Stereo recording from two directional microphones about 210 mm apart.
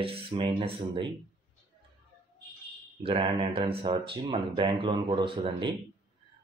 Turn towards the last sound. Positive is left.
turn(degrees=-25)  # may be behind; listen again after turning